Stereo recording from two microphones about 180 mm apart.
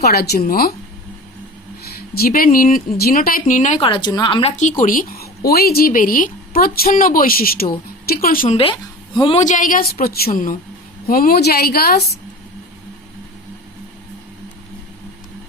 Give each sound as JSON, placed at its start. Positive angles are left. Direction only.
{"t": 0.0, "sound": "a woman's voice", "side_deg": 60}
{"t": 1.8, "sound": "a woman's voice", "side_deg": 55}
{"t": 3.8, "sound": "a woman's voice", "side_deg": 25}
{"t": 4.8, "sound": "a woman's voice", "side_deg": 50}
{"t": 9.1, "sound": "a woman's voice", "side_deg": 30}
{"t": 9.4, "sound": "a woman's voice", "side_deg": 45}